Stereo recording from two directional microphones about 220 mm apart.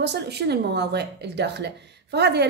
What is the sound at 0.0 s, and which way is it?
A woman's voice, 50° right (ahead or behind).